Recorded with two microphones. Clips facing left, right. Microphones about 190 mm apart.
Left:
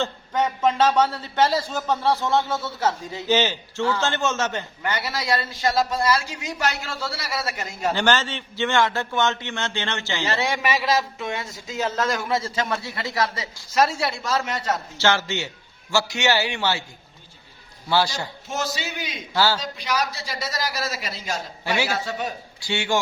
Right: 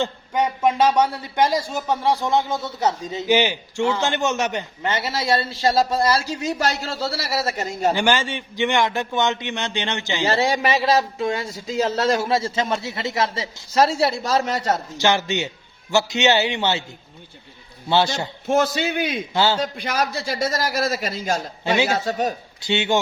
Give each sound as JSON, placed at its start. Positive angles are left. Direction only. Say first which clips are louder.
{"t": 0.0, "sound": "a man's voice", "louder": "right 2 dB", "side_deg": -10}
{"t": 7.9, "sound": "a man's voice", "louder": "right 1 dB", "side_deg": -10}
{"t": 10.2, "sound": "a man's voice", "louder": "right 5 dB", "side_deg": -30}
{"t": 14.9, "sound": "a man's voice", "louder": "right 1 dB", "side_deg": -15}
{"t": 17.8, "sound": "a man's voice", "louder": "right 3 dB", "side_deg": -25}
{"t": 18.4, "sound": "a man's voice", "louder": "right 11 dB", "side_deg": -55}
{"t": 19.3, "sound": "a man's voice", "louder": "even", "side_deg": -20}
{"t": 19.5, "sound": "a man's voice", "louder": "right 3 dB", "side_deg": -55}
{"t": 21.6, "sound": "a man's voice", "louder": "right 4 dB", "side_deg": -20}
{"t": 21.9, "sound": "a man's voice", "louder": "right 5 dB", "side_deg": -40}
{"t": 22.6, "sound": "a man's voice", "louder": "right 4 dB", "side_deg": -20}